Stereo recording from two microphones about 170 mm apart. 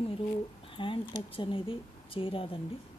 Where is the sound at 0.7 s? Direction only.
30° left (ahead or behind).